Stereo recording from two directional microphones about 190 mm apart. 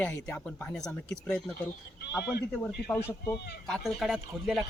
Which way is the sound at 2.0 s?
55° left (ahead or behind).